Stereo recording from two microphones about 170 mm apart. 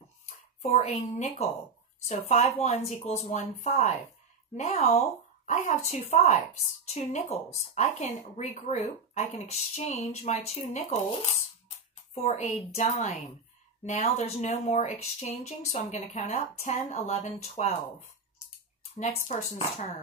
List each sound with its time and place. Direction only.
0.6 s speech: 40° left (ahead or behind)
19.3 s speech: 40° left (ahead or behind)